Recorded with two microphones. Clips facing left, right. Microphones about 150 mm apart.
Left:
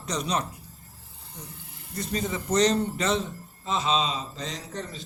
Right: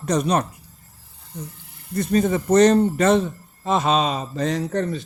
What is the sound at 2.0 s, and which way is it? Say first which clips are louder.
A man's voice: right 10 dB; 55° right (ahead or behind).